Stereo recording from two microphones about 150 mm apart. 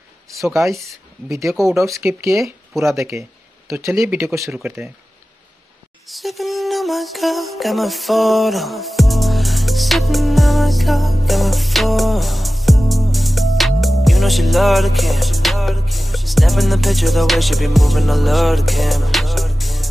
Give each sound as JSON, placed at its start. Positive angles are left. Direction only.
{"t": 0.8, "sound": "speech", "side_deg": -20}
{"t": 1.5, "sound": "speech", "side_deg": 0}
{"t": 2.0, "sound": "speech", "side_deg": -20}
{"t": 2.4, "sound": "speech", "side_deg": 0}
{"t": 3.0, "sound": "speech", "side_deg": -15}
{"t": 6.0, "sound": "music", "side_deg": 0}